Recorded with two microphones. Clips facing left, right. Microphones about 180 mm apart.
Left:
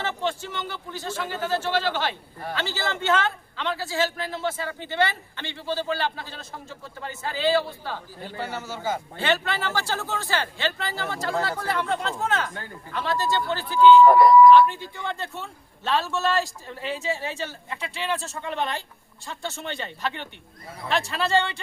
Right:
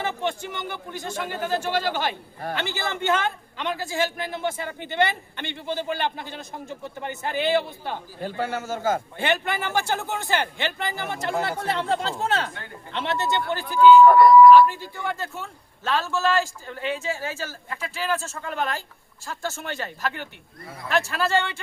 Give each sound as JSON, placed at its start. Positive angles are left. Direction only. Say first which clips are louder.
{"t": 0.0, "sound": "a man's voice", "louder": "right 1 dB", "side_deg": -15}
{"t": 8.2, "sound": "a man's voice", "louder": "right 6 dB", "side_deg": -50}
{"t": 9.1, "sound": "a man's voice", "louder": "even", "side_deg": -15}
{"t": 20.8, "sound": "a man's voice", "louder": "right 2 dB", "side_deg": 30}